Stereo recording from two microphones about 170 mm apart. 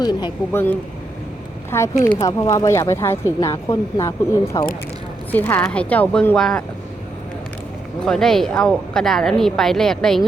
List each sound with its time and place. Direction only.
0.0 s speech: 25° left (ahead or behind)
0.5 s a woman's voice: 10° left (ahead or behind)
8.0 s speech: 5° left (ahead or behind)